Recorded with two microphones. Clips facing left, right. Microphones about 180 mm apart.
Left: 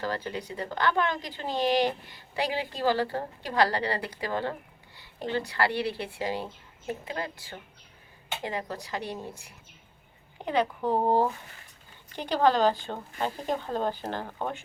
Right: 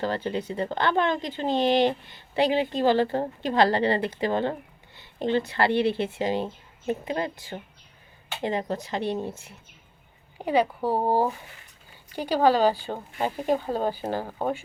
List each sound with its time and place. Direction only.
0.0 s speech: 25° right (ahead or behind)
10.3 s speech: 10° right (ahead or behind)